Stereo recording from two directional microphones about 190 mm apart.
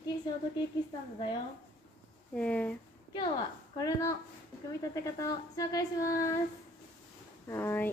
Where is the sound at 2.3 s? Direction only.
5° left (ahead or behind).